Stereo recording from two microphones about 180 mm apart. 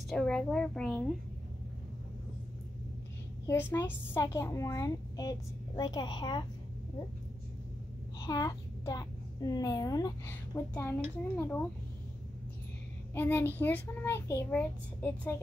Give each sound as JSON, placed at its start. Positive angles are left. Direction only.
{"t": 0.1, "sound": "a woman's voice", "side_deg": 5}
{"t": 3.4, "sound": "a child's voice", "side_deg": 15}
{"t": 8.2, "sound": "a child's voice", "side_deg": 20}
{"t": 13.1, "sound": "a child's voice", "side_deg": 10}